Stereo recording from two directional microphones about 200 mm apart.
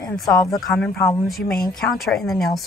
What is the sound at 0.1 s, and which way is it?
A woman's voice, 5° left (ahead or behind).